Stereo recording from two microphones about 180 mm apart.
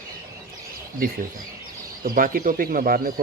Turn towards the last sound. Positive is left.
turn(degrees=-50)  # may be behind; listen again after turning